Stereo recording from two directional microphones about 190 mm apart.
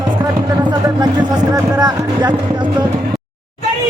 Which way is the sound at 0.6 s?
20° right (ahead or behind).